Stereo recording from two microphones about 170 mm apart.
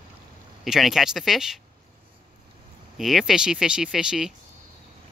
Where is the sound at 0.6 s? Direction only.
Centre (ahead or behind).